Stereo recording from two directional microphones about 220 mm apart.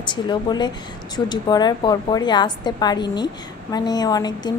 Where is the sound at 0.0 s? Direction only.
20° left (ahead or behind).